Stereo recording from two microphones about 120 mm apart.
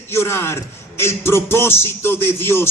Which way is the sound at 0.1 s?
20° left (ahead or behind).